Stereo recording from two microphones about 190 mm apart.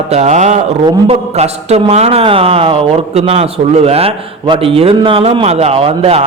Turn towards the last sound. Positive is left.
turn(degrees=-30)  # may be behind; listen again after turning